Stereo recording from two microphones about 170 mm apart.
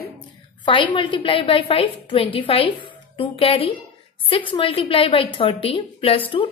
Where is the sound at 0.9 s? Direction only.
30° left (ahead or behind).